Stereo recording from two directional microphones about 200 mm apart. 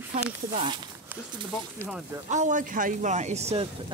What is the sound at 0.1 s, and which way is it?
Speech, 30° right (ahead or behind).